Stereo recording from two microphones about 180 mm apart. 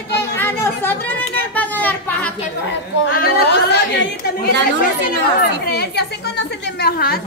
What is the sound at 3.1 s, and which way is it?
Speech, 55° left (ahead or behind).